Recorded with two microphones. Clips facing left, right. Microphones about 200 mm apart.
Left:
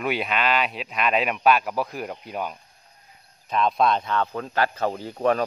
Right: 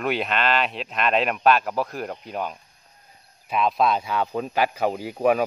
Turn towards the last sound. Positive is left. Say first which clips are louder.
# right 2 dB
turn(degrees=-10)  # may be behind; listen again after turning